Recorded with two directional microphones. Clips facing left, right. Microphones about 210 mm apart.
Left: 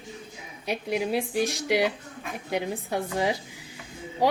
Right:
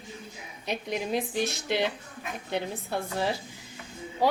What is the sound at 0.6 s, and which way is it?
A woman's voice, 10° left (ahead or behind).